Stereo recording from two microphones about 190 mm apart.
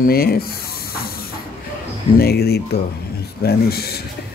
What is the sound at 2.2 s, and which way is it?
Speech, 55° left (ahead or behind).